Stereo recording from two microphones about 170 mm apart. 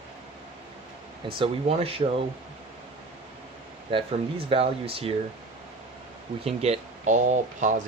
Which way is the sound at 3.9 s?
35° right (ahead or behind).